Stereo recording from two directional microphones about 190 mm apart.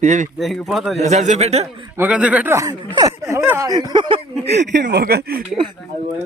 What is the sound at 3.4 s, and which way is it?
Speech, 10° right (ahead or behind).